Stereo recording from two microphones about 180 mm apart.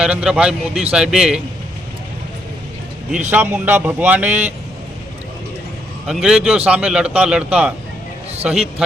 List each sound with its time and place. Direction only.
0.0 s speech: 5° right (ahead or behind)
3.2 s speech: 10° right (ahead or behind)
6.1 s speech: 5° right (ahead or behind)